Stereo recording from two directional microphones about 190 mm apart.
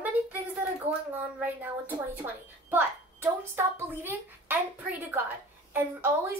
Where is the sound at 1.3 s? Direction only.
10° right (ahead or behind).